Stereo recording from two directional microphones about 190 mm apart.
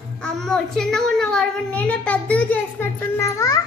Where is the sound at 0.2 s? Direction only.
5° left (ahead or behind).